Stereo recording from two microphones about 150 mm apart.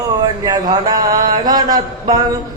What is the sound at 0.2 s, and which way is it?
Mantra, 25° right (ahead or behind).